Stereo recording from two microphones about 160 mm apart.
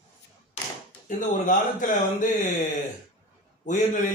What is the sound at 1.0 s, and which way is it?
A man's voice, 55° left (ahead or behind).